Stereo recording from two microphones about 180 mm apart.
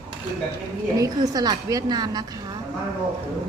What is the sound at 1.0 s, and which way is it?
A woman's voice, 20° right (ahead or behind).